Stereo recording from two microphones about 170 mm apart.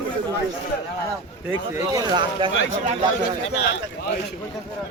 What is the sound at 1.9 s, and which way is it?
Speech, 25° right (ahead or behind).